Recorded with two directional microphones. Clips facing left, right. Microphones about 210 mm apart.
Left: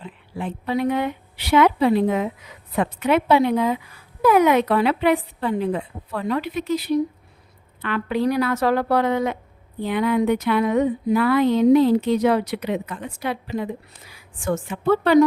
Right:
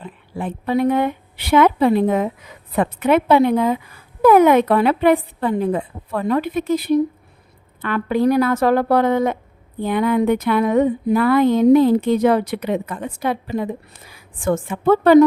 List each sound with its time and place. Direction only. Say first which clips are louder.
0.0 s speech: right 3 dB; 50° right (ahead or behind)